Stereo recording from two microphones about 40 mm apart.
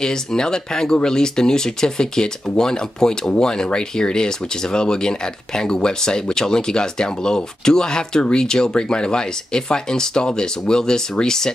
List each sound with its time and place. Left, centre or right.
0.0 s speech: centre